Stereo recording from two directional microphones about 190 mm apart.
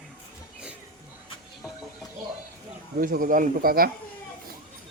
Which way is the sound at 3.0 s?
45° right (ahead or behind).